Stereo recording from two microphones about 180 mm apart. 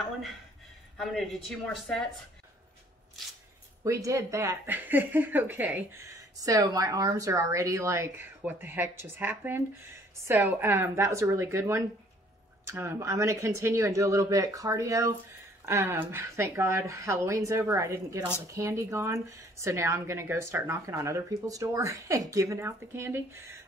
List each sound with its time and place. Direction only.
0.9 s a woman's voice: centre (ahead or behind)
3.8 s speech: 15° right (ahead or behind)